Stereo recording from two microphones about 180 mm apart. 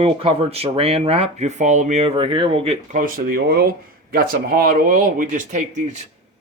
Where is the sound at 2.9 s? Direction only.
50° right (ahead or behind).